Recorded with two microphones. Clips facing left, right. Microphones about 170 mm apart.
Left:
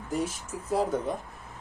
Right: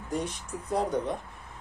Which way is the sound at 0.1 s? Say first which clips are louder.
Left 2 dB; 5° left (ahead or behind).